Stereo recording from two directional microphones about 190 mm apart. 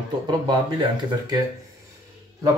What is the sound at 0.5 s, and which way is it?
Speech, 20° right (ahead or behind).